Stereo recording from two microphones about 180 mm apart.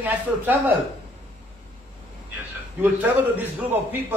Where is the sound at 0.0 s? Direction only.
10° right (ahead or behind).